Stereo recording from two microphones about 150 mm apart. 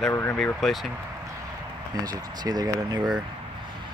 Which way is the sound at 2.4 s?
25° right (ahead or behind).